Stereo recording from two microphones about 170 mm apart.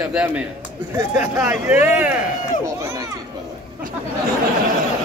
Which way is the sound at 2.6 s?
20° right (ahead or behind).